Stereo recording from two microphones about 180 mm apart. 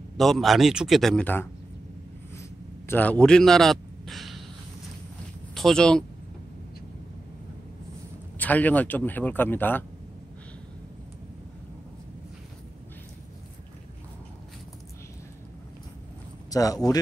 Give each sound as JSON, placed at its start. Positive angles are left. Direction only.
{"t": 0.2, "sound": "speech", "side_deg": 0}
{"t": 2.9, "sound": "a man's voice", "side_deg": 10}
{"t": 5.5, "sound": "speech", "side_deg": 0}
{"t": 8.4, "sound": "speech", "side_deg": 10}
{"t": 16.4, "sound": "speech", "side_deg": 20}